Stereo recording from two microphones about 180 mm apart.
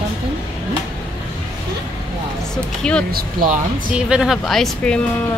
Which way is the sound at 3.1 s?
55° right (ahead or behind).